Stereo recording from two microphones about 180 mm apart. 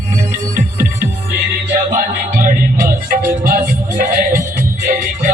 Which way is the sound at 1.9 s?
50° right (ahead or behind).